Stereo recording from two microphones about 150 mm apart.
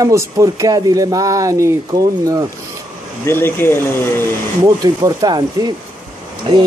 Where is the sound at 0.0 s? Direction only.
20° right (ahead or behind).